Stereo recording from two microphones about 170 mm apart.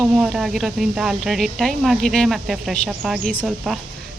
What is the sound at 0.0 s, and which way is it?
Speech, centre (ahead or behind).